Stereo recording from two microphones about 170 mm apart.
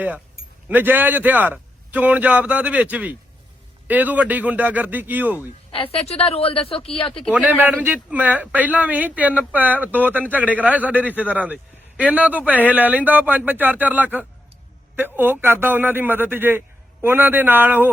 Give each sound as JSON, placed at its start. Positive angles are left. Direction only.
{"t": 0.3, "sound": "a man's voice", "side_deg": -10}
{"t": 5.7, "sound": "speech", "side_deg": 35}
{"t": 7.4, "sound": "a man's voice", "side_deg": -10}